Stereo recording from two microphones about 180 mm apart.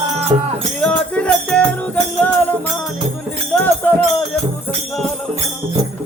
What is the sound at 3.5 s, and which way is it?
Music, 10° left (ahead or behind).